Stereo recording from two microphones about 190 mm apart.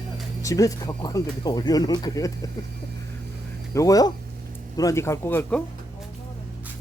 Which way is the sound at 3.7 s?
20° left (ahead or behind).